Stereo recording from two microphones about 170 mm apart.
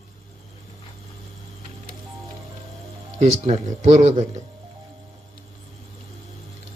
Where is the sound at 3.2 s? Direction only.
35° right (ahead or behind).